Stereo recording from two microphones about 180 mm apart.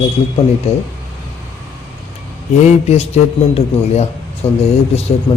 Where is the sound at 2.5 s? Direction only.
35° left (ahead or behind).